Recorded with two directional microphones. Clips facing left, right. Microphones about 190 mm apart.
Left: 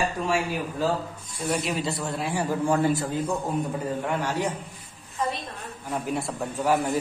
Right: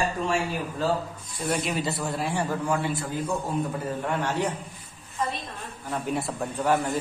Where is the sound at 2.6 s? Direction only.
40° left (ahead or behind).